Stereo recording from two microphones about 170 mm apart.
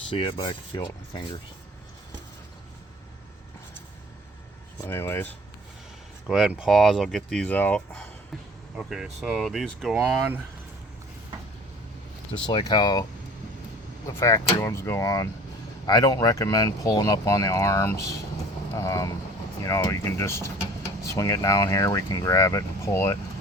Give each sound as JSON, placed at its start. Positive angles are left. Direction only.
{"t": 0.1, "sound": "speech", "side_deg": 30}
{"t": 4.9, "sound": "speech", "side_deg": 15}
{"t": 6.2, "sound": "speech", "side_deg": -5}
{"t": 8.7, "sound": "speech", "side_deg": -5}
{"t": 12.5, "sound": "speech", "side_deg": 25}
{"t": 14.1, "sound": "speech", "side_deg": 15}